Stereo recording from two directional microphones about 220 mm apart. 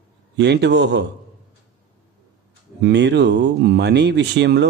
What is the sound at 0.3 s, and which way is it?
Speech, 50° right (ahead or behind).